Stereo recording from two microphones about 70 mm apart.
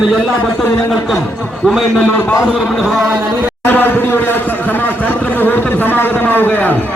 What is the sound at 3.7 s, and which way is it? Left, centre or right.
A man's voice, left.